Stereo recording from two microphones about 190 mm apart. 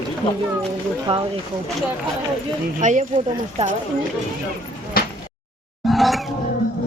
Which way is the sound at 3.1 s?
30° right (ahead or behind).